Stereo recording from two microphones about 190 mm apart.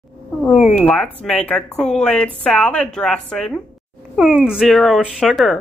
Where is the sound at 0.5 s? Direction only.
Centre (ahead or behind).